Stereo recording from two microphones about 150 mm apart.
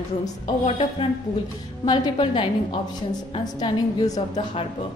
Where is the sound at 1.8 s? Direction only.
30° left (ahead or behind).